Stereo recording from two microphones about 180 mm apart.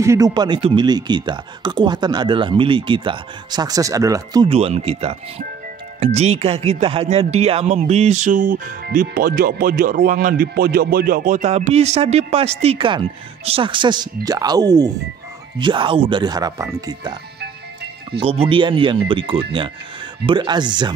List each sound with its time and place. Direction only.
0.0 s speech: 15° right (ahead or behind)
4.5 s speech: 35° right (ahead or behind); by 17.1 s 20° right (ahead or behind)
18.2 s speech: 30° right (ahead or behind)